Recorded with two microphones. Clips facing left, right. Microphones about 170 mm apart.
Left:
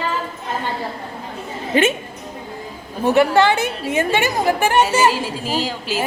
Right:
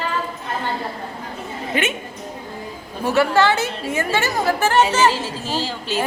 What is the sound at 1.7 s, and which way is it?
Speech, 35° left (ahead or behind).